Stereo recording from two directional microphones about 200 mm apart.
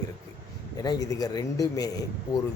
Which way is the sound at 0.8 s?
20° left (ahead or behind).